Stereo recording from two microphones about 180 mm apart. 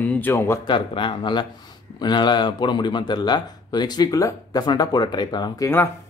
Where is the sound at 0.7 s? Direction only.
25° left (ahead or behind).